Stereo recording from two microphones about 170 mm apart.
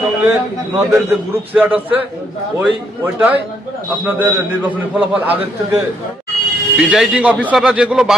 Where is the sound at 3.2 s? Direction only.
10° right (ahead or behind).